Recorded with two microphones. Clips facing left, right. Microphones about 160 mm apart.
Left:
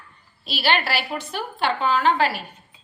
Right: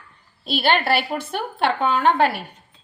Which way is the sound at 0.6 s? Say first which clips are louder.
Right 3 dB; 55° right (ahead or behind).